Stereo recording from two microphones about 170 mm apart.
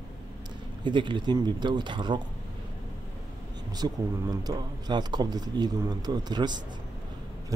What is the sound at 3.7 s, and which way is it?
Speech, 25° right (ahead or behind).